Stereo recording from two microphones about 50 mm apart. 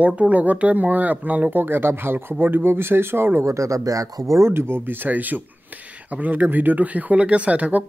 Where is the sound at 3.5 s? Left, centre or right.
Right.